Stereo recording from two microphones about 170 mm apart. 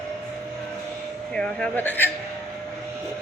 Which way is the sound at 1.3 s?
5° left (ahead or behind).